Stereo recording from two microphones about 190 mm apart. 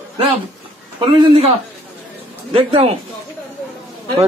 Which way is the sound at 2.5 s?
30° right (ahead or behind).